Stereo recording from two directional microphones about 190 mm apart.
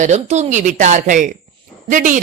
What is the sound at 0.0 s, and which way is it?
A woman's voice, 35° right (ahead or behind).